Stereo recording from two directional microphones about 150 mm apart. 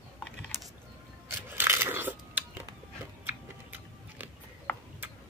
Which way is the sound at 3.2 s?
10° right (ahead or behind).